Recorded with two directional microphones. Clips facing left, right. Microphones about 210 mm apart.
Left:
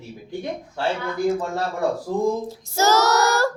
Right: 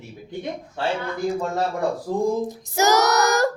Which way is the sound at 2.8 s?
15° right (ahead or behind).